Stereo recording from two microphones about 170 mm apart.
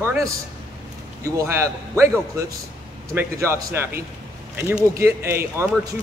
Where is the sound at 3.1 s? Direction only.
15° right (ahead or behind).